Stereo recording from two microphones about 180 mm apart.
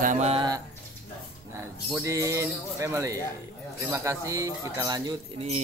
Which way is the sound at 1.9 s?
15° right (ahead or behind).